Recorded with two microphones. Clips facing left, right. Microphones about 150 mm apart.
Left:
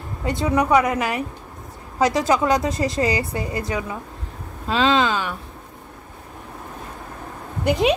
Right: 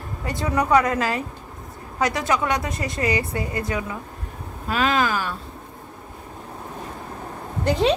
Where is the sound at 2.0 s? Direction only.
30° left (ahead or behind).